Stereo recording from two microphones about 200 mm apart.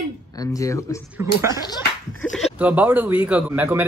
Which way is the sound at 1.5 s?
20° left (ahead or behind).